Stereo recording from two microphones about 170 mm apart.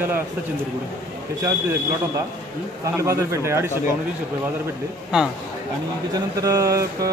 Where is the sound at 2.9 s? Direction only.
15° right (ahead or behind).